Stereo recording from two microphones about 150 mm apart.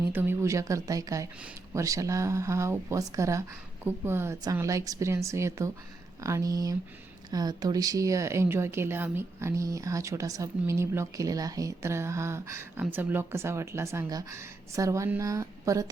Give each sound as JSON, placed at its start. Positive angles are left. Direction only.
{"t": 0.1, "sound": "speech", "side_deg": -15}